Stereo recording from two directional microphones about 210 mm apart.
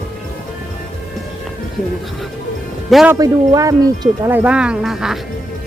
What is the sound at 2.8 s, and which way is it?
Speech, 5° right (ahead or behind).